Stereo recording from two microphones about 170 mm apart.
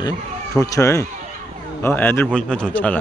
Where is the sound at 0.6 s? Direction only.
20° left (ahead or behind).